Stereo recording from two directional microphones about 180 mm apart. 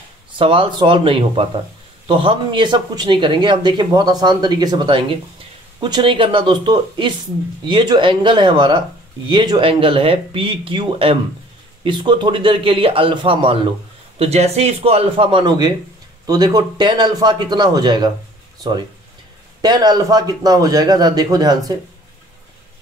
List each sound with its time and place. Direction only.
0.4 s speech: 30° right (ahead or behind)